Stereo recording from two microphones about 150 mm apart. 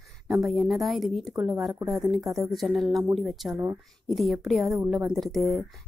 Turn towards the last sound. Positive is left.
turn(degrees=0)  # may be behind; listen again after turning